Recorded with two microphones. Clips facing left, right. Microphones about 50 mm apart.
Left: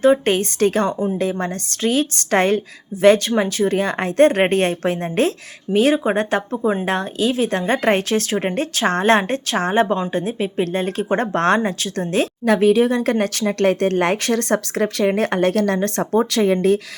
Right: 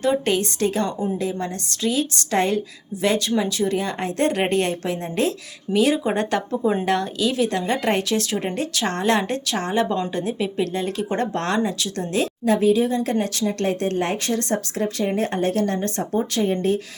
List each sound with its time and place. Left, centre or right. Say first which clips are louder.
0.0 s speech: left 5 dB; left
0.9 s speech: left 4 dB; left
1.2 s speech: left 4 dB; left